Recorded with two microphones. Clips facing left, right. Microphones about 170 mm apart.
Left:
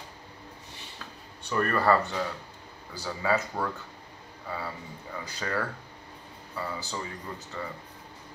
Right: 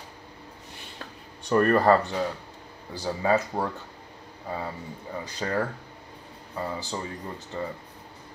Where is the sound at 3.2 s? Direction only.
25° right (ahead or behind).